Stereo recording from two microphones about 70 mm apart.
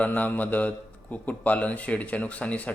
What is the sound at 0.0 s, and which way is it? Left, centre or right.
Speech, left.